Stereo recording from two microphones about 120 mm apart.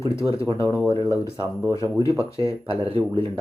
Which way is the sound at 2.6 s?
50° right (ahead or behind).